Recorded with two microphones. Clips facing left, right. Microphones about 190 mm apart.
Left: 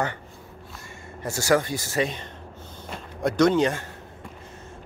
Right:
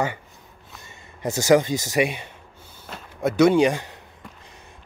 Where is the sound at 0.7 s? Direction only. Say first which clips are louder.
Left 3 dB; 20° right (ahead or behind).